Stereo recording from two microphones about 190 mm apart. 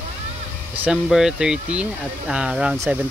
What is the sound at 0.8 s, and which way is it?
Speech, 5° right (ahead or behind).